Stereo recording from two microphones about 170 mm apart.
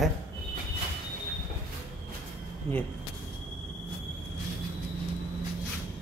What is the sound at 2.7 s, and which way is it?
Speech, 35° right (ahead or behind).